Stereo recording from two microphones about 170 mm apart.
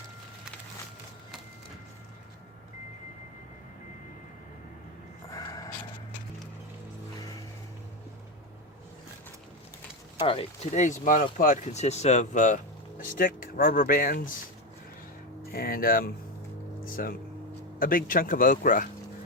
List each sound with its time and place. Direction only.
5.3 s music: 20° left (ahead or behind)
10.2 s speech: 35° left (ahead or behind)
13.0 s speech: 55° left (ahead or behind)
15.5 s speech: 60° left (ahead or behind)
16.8 s a sound: 55° left (ahead or behind)
17.7 s speech: 55° left (ahead or behind)